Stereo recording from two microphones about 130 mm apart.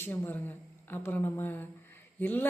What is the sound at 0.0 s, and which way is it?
Speech, 15° left (ahead or behind).